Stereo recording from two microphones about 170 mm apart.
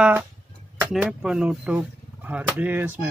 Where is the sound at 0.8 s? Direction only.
5° right (ahead or behind).